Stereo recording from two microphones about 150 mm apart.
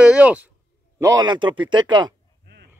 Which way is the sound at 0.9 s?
20° right (ahead or behind).